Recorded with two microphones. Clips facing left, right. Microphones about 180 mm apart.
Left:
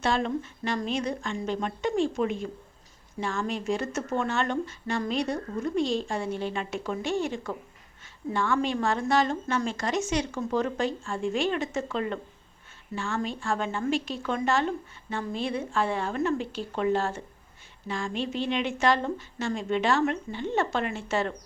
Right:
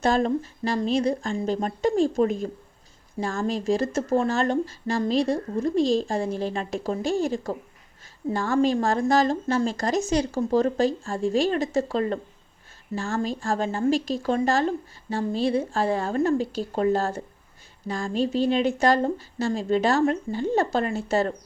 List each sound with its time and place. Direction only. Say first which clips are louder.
0.0 s speech: right 5 dB; 40° right (ahead or behind)